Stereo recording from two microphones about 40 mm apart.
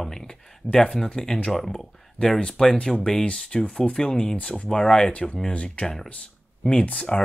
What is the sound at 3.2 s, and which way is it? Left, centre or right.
Speech, left.